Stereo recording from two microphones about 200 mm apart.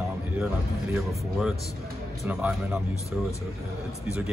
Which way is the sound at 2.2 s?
5° right (ahead or behind).